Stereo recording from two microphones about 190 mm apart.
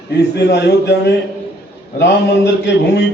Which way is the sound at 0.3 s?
60° left (ahead or behind).